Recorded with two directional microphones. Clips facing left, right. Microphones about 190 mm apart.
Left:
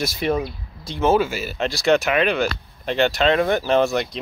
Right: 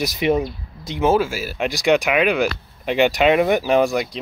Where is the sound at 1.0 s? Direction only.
5° right (ahead or behind).